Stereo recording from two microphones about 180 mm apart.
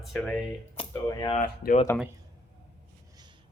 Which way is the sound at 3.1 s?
25° right (ahead or behind).